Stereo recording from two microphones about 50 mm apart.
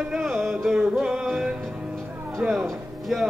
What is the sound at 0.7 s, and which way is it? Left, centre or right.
Music, centre.